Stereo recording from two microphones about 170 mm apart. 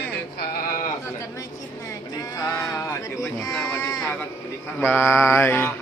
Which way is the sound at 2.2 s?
20° left (ahead or behind).